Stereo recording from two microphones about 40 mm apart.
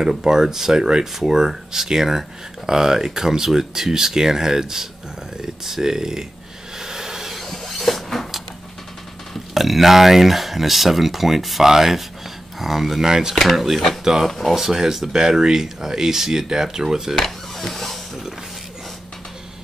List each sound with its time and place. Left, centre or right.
0.2 s speech: centre
6.8 s vehicle: centre
7.4 s printer: centre
9.5 s speech: centre
15.1 s speech: centre
17.6 s a sound: centre